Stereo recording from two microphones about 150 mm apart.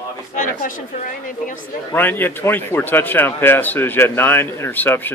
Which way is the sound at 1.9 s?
15° left (ahead or behind).